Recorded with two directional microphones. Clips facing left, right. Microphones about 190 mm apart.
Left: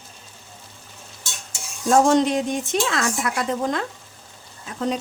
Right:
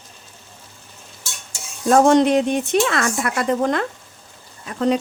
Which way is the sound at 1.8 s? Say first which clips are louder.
Right 3 dB; 60° right (ahead or behind).